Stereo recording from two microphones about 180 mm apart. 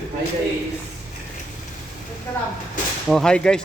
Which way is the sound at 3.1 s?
5° left (ahead or behind).